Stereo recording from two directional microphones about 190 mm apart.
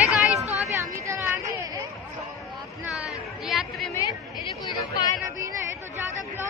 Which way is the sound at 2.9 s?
Centre (ahead or behind).